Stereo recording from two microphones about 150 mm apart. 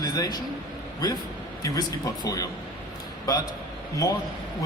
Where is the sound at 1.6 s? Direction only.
25° left (ahead or behind).